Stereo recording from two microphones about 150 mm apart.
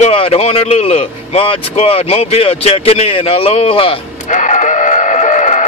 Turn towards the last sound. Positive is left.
turn(degrees=50)  # may be behind; listen again after turning